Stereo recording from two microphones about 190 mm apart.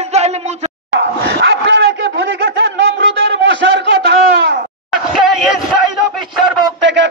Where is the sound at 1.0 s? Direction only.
65° right (ahead or behind).